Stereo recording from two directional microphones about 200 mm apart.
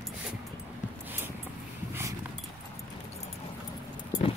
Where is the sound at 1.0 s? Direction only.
10° right (ahead or behind).